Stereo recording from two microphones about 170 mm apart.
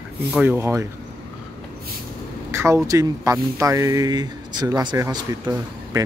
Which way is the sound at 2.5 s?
15° right (ahead or behind).